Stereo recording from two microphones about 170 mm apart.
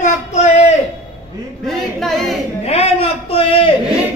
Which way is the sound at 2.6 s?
35° left (ahead or behind).